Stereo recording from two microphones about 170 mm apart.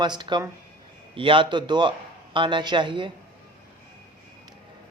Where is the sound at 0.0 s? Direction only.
25° right (ahead or behind).